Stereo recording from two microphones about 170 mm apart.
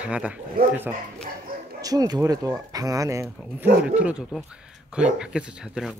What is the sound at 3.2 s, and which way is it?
Speech, 5° right (ahead or behind).